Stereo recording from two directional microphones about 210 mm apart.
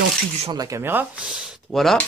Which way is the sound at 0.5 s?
15° right (ahead or behind).